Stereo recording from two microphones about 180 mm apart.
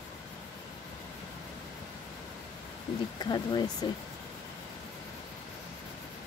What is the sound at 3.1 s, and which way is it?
Speech, 20° left (ahead or behind).